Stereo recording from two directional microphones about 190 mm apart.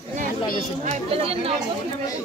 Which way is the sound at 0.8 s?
30° right (ahead or behind).